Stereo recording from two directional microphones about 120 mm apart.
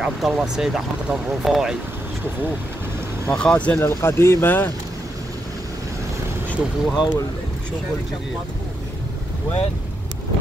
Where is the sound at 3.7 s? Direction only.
20° left (ahead or behind).